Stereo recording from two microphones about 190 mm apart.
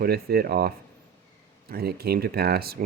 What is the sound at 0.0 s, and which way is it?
Speech, 55° right (ahead or behind).